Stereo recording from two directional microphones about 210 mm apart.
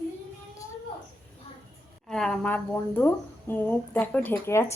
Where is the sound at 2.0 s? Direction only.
Centre (ahead or behind).